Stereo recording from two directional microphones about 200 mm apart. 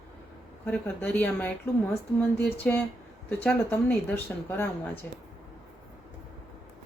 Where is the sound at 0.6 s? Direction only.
10° left (ahead or behind).